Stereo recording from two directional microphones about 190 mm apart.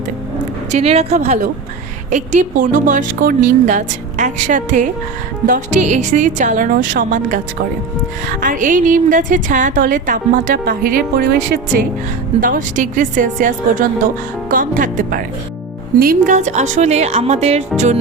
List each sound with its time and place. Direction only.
0.7 s a woman's voice: 35° right (ahead or behind)